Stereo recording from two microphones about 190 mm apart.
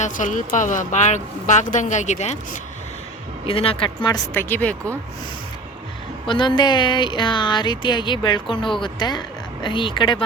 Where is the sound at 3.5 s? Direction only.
30° left (ahead or behind).